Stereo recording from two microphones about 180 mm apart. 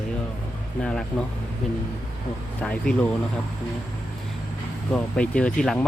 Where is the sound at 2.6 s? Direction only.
5° left (ahead or behind).